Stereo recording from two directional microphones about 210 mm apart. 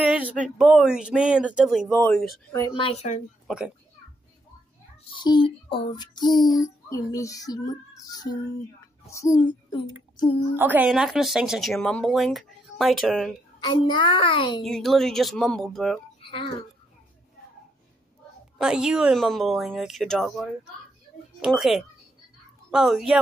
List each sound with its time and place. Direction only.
0.0 s a sound: 5° right (ahead or behind)
0.6 s speech: 5° right (ahead or behind)
2.6 s a child's voice: 25° left (ahead or behind)
3.4 s a child's voice: 5° right (ahead or behind)
5.1 s a child's voice: 20° left (ahead or behind)
6.5 s child singing: 15° left (ahead or behind)
9.0 s a child's voice: 15° left (ahead or behind)
10.5 s speech: 10° right (ahead or behind)
13.6 s a child's voice: 20° left (ahead or behind)
14.6 s speech: centre (ahead or behind)
16.2 s a sound: 25° left (ahead or behind)
18.6 s speech: 5° right (ahead or behind)
21.4 s speech: centre (ahead or behind)